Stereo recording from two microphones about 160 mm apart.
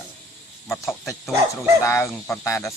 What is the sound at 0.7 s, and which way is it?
Speech, 15° left (ahead or behind).